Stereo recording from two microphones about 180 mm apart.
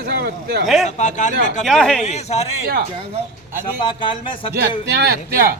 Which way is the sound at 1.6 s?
5° left (ahead or behind).